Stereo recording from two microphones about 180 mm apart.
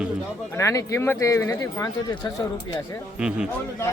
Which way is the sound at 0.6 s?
15° left (ahead or behind).